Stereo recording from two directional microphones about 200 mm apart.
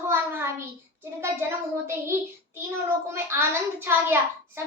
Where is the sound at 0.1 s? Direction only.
10° right (ahead or behind).